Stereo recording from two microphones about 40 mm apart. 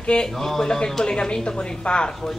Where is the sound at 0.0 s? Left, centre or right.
Left.